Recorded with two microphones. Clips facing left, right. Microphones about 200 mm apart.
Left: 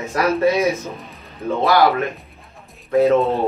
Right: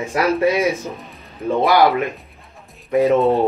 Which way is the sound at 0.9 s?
Centre (ahead or behind).